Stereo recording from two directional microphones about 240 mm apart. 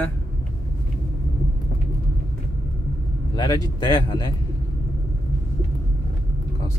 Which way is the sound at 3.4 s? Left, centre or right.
Centre.